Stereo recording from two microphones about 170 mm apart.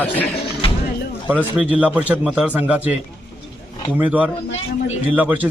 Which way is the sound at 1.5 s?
10° right (ahead or behind).